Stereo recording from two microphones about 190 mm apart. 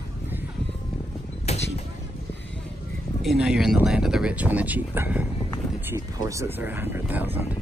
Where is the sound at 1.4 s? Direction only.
35° left (ahead or behind).